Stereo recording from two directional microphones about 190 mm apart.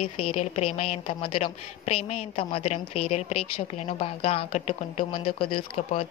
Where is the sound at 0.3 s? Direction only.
35° left (ahead or behind).